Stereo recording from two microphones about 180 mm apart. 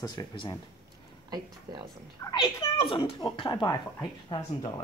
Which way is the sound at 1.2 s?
20° right (ahead or behind).